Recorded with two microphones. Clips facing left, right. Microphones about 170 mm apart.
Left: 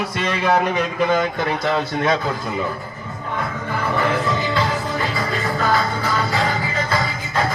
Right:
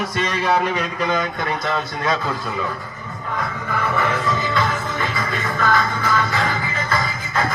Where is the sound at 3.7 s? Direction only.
30° left (ahead or behind).